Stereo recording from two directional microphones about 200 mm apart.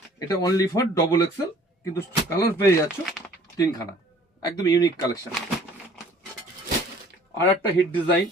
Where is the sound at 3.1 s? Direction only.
Centre (ahead or behind).